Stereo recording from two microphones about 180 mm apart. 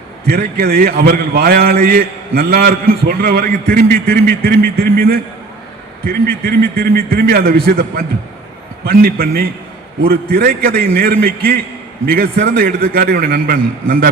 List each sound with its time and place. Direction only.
0.3 s a man's voice: 60° right (ahead or behind)